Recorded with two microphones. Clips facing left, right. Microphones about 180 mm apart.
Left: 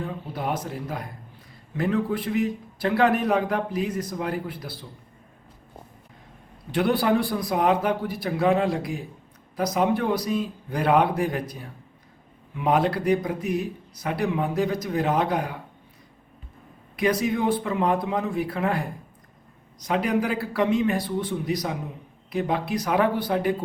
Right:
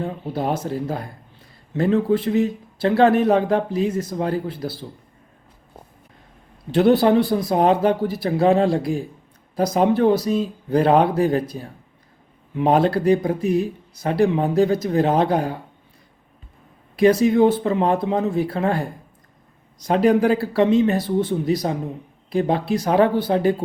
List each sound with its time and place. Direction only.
0.3 s speech: 30° right (ahead or behind)
6.7 s speech: 25° right (ahead or behind)
12.5 s speech: 30° right (ahead or behind)
17.0 s speech: 25° right (ahead or behind)